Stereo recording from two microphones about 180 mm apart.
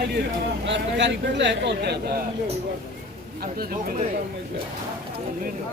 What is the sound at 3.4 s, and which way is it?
Speech, 55° right (ahead or behind).